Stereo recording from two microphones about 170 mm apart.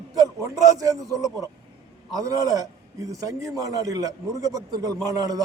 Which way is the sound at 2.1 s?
20° right (ahead or behind).